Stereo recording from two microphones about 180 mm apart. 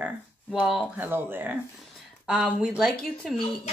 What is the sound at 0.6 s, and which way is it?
Speech, centre (ahead or behind).